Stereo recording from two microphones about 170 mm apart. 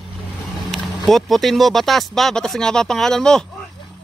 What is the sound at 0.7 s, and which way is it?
Speech, centre (ahead or behind).